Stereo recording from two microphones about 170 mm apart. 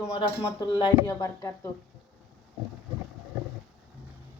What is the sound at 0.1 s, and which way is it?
Speech, 25° left (ahead or behind).